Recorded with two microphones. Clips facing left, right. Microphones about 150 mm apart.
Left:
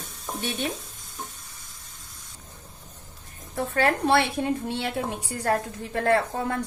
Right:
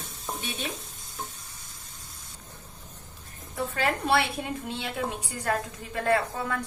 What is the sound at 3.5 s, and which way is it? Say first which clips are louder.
Speech: left 4 dB; 50° left (ahead or behind).